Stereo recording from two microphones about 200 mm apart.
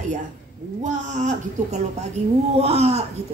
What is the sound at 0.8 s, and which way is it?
A woman's voice, 35° right (ahead or behind).